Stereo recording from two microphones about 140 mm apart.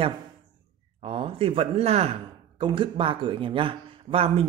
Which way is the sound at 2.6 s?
35° right (ahead or behind).